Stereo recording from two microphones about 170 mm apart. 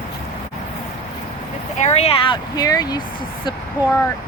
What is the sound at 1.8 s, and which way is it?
Speech, 40° left (ahead or behind).